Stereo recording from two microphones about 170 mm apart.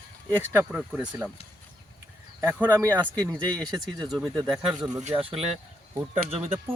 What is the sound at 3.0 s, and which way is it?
Speech, 20° right (ahead or behind).